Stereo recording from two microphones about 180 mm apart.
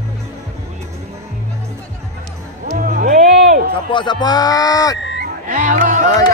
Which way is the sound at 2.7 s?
50° right (ahead or behind).